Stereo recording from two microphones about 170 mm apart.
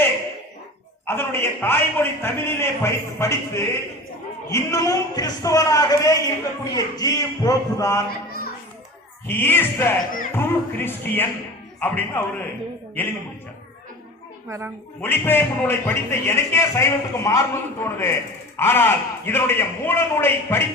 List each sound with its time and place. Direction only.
1.0 s a man's voice: 15° left (ahead or behind)
9.2 s speech: 15° left (ahead or behind)
15.0 s speech: 15° left (ahead or behind)